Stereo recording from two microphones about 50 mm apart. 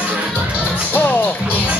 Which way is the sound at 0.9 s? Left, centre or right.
Left.